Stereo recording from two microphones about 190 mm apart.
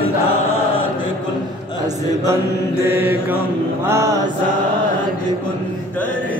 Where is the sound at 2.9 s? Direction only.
10° right (ahead or behind).